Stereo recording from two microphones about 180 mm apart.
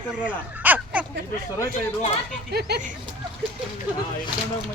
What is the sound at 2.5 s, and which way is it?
Speech, 60° right (ahead or behind).